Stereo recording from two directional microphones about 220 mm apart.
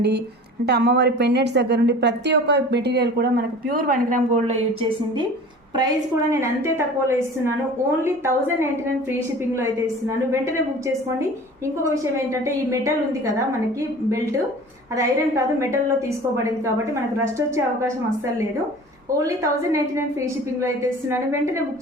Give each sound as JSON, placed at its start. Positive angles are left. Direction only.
{"t": 0.6, "sound": "a woman's voice", "side_deg": -50}
{"t": 6.3, "sound": "a woman's voice", "side_deg": -10}
{"t": 12.3, "sound": "a woman's voice", "side_deg": -15}
{"t": 14.9, "sound": "a woman's voice", "side_deg": -15}
{"t": 19.2, "sound": "a woman's voice", "side_deg": -15}